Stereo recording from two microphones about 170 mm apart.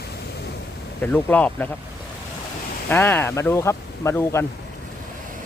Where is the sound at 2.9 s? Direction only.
10° left (ahead or behind).